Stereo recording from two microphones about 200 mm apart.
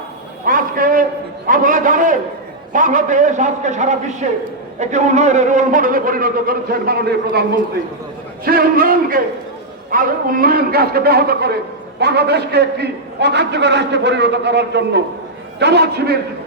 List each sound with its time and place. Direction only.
0.4 s a sound: 45° right (ahead or behind)
1.5 s a man's voice: 40° right (ahead or behind)
8.4 s a man's voice: 45° right (ahead or behind)